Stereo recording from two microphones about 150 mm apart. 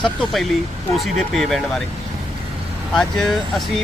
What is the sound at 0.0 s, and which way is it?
Speech, centre (ahead or behind).